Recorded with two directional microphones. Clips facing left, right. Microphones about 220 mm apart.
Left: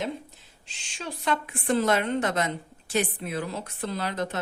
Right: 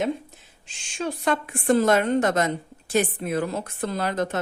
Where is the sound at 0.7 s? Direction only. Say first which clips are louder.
Right 8 dB; 50° right (ahead or behind).